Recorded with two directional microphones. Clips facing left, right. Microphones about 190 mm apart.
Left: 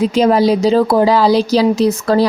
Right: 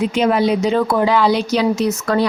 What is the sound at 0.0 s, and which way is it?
Speech, 35° left (ahead or behind).